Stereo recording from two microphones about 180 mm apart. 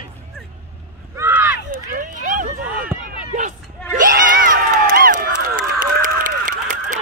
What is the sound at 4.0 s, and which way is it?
Crowd, 45° right (ahead or behind).